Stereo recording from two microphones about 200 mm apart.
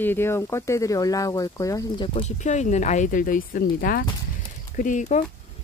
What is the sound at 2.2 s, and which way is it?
Speech, 35° left (ahead or behind).